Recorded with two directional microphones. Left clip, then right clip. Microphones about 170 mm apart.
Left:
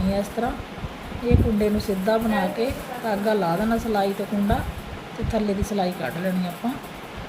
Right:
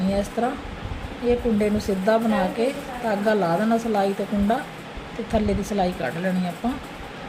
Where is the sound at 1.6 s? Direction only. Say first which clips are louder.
Even; 15° right (ahead or behind).